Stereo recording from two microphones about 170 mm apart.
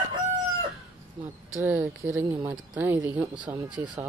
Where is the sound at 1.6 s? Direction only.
10° right (ahead or behind).